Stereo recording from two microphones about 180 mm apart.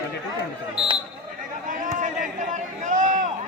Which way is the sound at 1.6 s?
45° right (ahead or behind).